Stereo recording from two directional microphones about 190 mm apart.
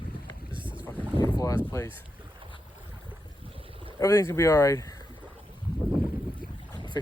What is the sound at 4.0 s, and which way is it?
Speech, 15° left (ahead or behind).